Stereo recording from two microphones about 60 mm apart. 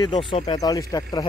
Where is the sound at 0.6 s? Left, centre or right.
Left.